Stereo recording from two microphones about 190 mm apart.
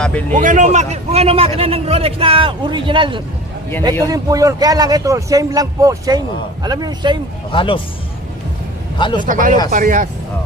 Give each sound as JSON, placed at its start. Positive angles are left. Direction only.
{"t": 0.0, "sound": "vehicle", "side_deg": 5}
{"t": 0.3, "sound": "a man's voice", "side_deg": -40}
{"t": 7.5, "sound": "speech", "side_deg": 25}
{"t": 9.0, "sound": "a man's voice", "side_deg": 25}
{"t": 9.2, "sound": "speech", "side_deg": -45}